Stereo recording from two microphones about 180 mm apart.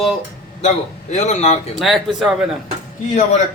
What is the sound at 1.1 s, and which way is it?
Speech, 40° left (ahead or behind).